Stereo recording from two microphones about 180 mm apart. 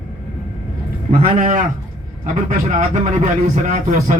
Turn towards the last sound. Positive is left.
turn(degrees=-45)  # may be behind; listen again after turning